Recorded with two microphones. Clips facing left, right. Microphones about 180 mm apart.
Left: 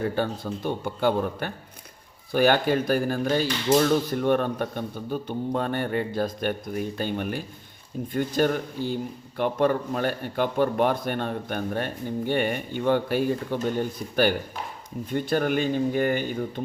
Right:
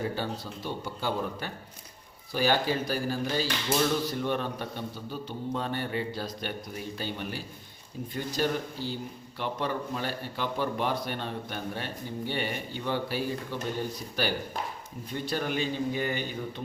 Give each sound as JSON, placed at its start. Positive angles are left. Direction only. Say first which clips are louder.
{"t": 0.2, "sound": "a man's voice", "louder": "left 7 dB", "side_deg": 55}